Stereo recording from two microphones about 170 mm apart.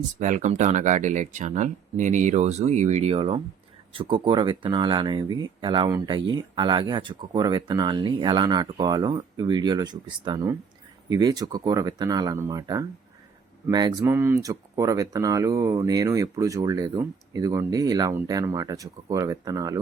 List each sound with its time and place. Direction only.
0.2 s speech: 45° right (ahead or behind); by 14.1 s 25° right (ahead or behind)
14.1 s speech: 15° right (ahead or behind)